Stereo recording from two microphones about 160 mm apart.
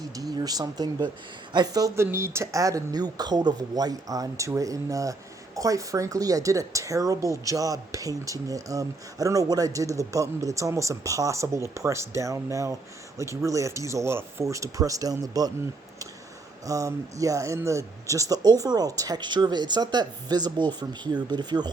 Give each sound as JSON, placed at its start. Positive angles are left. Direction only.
{"t": 0.2, "sound": "a woman's voice", "side_deg": -25}
{"t": 16.6, "sound": "a woman's voice", "side_deg": -20}